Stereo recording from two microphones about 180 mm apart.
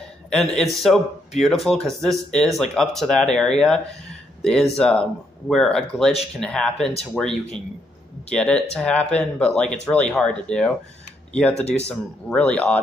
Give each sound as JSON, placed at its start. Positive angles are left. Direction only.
{"t": 0.3, "sound": "speech", "side_deg": 0}
{"t": 11.5, "sound": "speech", "side_deg": 35}
{"t": 11.9, "sound": "speech", "side_deg": 5}